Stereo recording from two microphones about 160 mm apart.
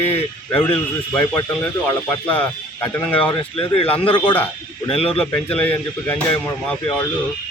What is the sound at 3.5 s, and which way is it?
Speech, 35° left (ahead or behind).